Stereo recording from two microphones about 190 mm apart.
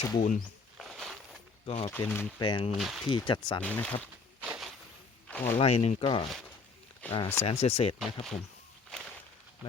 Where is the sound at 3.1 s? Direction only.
25° left (ahead or behind).